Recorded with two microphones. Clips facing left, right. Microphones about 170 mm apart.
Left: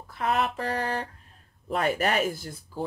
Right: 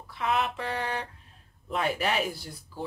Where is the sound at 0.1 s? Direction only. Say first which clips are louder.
Left 2 dB; 45° left (ahead or behind).